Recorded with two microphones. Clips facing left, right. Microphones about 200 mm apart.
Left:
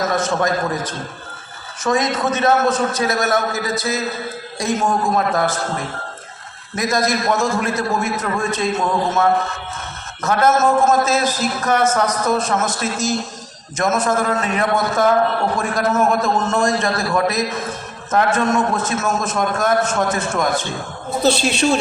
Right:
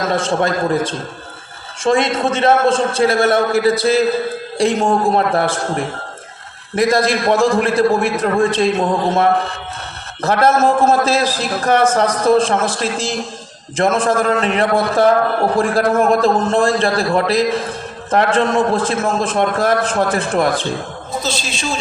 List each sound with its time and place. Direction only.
0.0 s a man's voice: 30° right (ahead or behind)
21.2 s a woman's voice: 65° left (ahead or behind)